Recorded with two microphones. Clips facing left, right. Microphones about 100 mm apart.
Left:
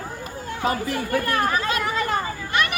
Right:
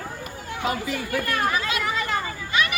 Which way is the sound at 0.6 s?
40° left (ahead or behind).